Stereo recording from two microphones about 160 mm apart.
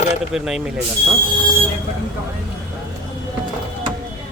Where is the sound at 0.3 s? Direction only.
5° right (ahead or behind).